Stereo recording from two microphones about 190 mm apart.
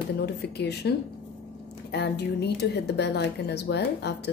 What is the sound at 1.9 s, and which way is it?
Speech, 60° left (ahead or behind).